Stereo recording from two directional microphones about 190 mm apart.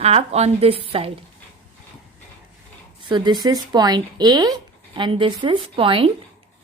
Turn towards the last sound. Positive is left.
turn(degrees=-30)  # may be behind; listen again after turning